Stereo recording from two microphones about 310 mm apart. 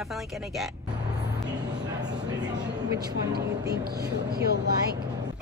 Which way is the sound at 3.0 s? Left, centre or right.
Right.